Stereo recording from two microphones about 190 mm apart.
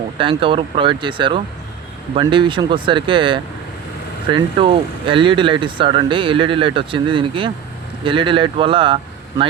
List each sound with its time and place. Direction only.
0.2 s speech: 25° right (ahead or behind)